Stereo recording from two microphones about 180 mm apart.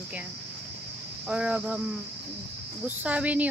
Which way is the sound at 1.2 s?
5° right (ahead or behind).